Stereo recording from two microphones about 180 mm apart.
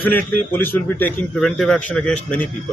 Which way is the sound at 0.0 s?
10° left (ahead or behind).